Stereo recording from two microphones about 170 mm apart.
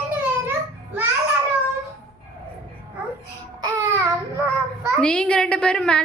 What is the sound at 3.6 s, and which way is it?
Babbling, 20° right (ahead or behind).